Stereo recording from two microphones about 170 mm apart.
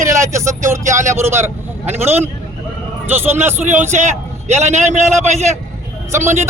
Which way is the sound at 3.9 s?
40° right (ahead or behind).